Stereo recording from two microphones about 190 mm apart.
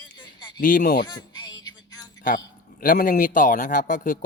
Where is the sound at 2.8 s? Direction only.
45° left (ahead or behind).